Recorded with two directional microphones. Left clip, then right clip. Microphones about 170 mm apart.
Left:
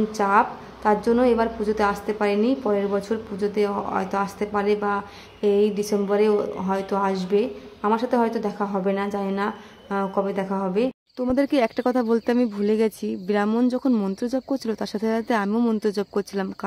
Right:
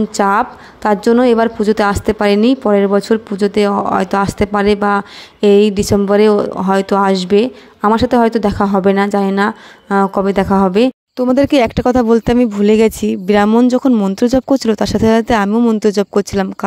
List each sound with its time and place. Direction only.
0.2 s a woman's voice: 55° right (ahead or behind)
14.2 s a woman's voice: 55° right (ahead or behind)
15.5 s a woman's voice: 35° right (ahead or behind)